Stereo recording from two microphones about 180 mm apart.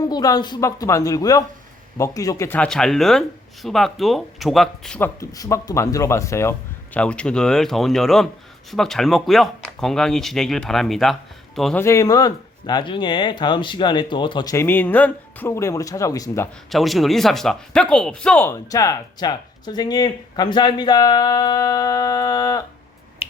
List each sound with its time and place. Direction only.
0.0 s speech: 20° left (ahead or behind); by 11.8 s centre (ahead or behind)
11.8 s speech: 15° left (ahead or behind)
16.6 s speech: centre (ahead or behind); by 22.6 s 20° left (ahead or behind)